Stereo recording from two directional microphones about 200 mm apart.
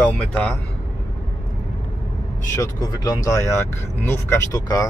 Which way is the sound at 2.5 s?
20° left (ahead or behind).